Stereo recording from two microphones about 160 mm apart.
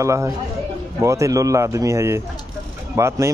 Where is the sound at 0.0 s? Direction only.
20° right (ahead or behind).